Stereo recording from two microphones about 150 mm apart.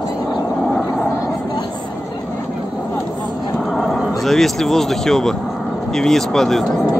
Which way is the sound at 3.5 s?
5° left (ahead or behind).